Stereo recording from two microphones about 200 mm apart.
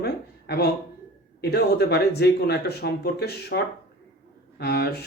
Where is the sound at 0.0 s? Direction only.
55° left (ahead or behind).